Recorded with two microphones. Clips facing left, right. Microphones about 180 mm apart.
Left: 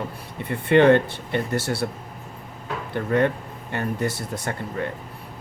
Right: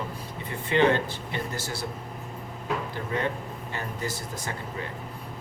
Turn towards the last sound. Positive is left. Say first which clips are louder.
# left 6 dB
turn(degrees=65)  # may be behind; listen again after turning